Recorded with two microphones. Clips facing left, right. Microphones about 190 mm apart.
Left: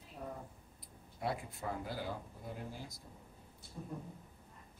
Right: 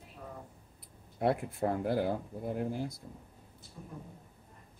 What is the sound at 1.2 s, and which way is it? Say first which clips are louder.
Speech: right 9 dB; 60° right (ahead or behind).